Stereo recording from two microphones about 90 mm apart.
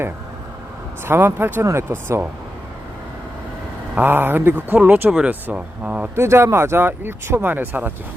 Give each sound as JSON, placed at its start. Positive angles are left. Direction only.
{"t": 1.0, "sound": "speech", "side_deg": -25}
{"t": 3.9, "sound": "speech", "side_deg": -20}
{"t": 6.1, "sound": "speech", "side_deg": -30}